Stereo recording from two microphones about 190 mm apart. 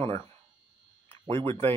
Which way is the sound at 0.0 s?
30° right (ahead or behind).